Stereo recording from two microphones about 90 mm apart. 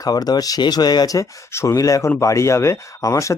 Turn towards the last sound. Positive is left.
turn(degrees=35)  # may be behind; listen again after turning